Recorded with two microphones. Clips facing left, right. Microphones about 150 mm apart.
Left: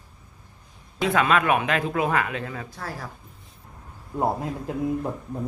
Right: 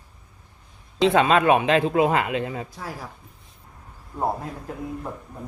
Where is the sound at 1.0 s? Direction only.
25° right (ahead or behind).